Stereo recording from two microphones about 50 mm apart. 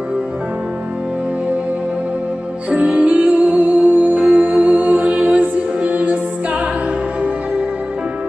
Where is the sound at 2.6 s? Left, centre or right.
Right.